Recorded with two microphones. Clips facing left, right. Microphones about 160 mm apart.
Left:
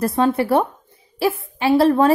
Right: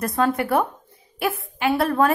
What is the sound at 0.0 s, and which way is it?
A woman's voice, 30° left (ahead or behind).